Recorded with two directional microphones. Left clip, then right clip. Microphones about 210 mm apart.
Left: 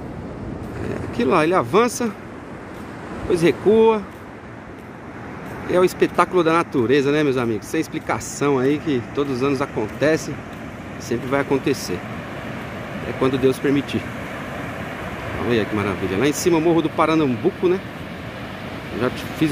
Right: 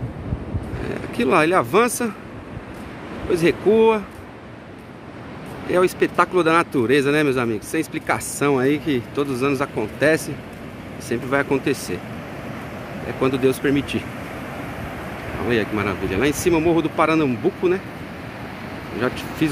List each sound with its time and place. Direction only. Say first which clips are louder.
0.8 s speech: even; centre (ahead or behind)
3.3 s speech: left 1 dB; 5° left (ahead or behind)
5.7 s speech: left 1 dB; 5° left (ahead or behind)
13.2 s speech: even; centre (ahead or behind)
15.4 s speech: even; centre (ahead or behind)
18.9 s speech: even; centre (ahead or behind)